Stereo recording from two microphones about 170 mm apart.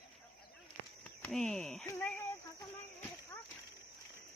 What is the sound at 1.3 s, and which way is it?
Speech, 5° left (ahead or behind).